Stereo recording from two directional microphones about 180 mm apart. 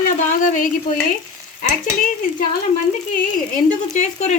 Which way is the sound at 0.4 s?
45° left (ahead or behind).